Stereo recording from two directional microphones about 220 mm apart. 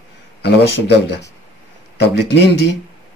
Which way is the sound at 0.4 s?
50° left (ahead or behind).